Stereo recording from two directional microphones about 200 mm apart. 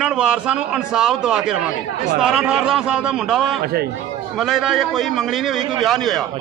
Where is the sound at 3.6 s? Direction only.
50° right (ahead or behind).